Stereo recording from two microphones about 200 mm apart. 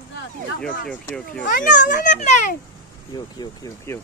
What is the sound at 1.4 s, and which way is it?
A child's voice, 40° left (ahead or behind).